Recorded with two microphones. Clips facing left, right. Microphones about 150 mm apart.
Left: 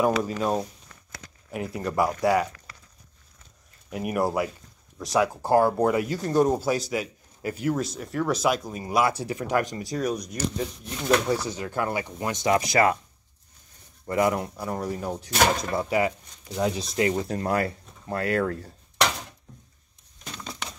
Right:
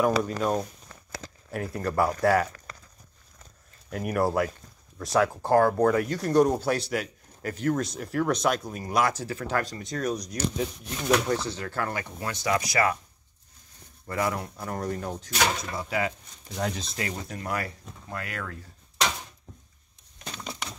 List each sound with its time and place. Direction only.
0.4 s speech: 5° left (ahead or behind)
2.5 s a sound: 40° right (ahead or behind)
3.9 s speech: 5° left (ahead or behind)
9.2 s speech: 15° left (ahead or behind)
11.2 s speech: 10° left (ahead or behind)
14.0 s speech: 20° left (ahead or behind)
14.6 s speech: 5° left (ahead or behind)
15.3 s speech: 50° left (ahead or behind)
16.5 s speech: 10° left (ahead or behind)
17.0 s speech: 25° left (ahead or behind)